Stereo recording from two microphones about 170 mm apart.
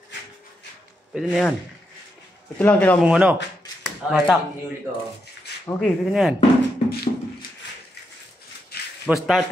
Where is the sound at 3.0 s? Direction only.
5° right (ahead or behind).